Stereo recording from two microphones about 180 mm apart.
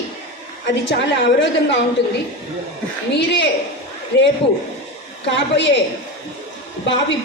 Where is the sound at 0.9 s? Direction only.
75° left (ahead or behind).